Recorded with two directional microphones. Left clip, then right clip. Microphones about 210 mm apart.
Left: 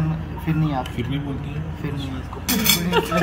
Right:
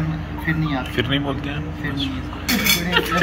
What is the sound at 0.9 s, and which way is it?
Speech, centre (ahead or behind).